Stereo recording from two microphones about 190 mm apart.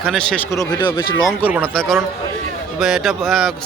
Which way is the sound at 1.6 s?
5° left (ahead or behind).